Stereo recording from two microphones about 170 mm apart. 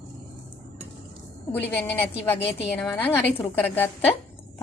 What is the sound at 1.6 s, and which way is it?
A woman's voice, 10° left (ahead or behind).